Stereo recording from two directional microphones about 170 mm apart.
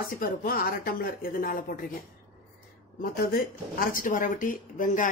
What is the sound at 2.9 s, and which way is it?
Speech, 60° left (ahead or behind).